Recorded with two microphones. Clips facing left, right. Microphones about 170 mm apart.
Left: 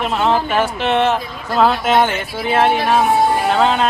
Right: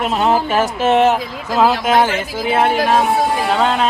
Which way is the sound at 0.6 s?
40° right (ahead or behind).